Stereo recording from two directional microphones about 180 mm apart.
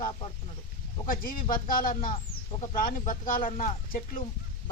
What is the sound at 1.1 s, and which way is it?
Speech, 50° left (ahead or behind).